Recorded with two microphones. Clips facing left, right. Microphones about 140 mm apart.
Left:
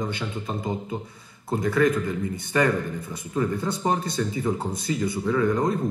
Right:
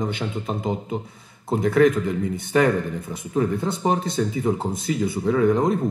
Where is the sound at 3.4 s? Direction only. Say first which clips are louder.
Right 3 dB; 20° right (ahead or behind).